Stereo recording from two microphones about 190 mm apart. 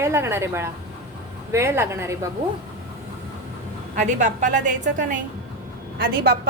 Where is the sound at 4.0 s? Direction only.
40° right (ahead or behind).